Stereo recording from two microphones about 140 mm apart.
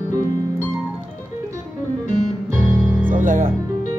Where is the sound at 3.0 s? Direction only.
70° right (ahead or behind).